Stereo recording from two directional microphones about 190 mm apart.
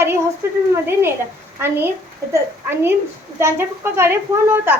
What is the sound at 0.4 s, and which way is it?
A woman's voice, 10° right (ahead or behind).